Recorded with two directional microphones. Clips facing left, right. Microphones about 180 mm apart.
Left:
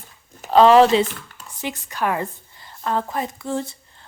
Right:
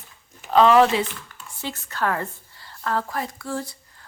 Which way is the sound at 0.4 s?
35° left (ahead or behind).